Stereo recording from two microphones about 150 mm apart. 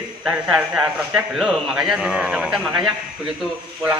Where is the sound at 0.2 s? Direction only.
5° right (ahead or behind).